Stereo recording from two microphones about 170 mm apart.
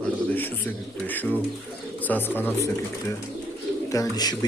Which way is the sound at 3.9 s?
20° left (ahead or behind).